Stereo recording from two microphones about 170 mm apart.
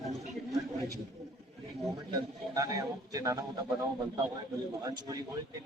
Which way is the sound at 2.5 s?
20° right (ahead or behind).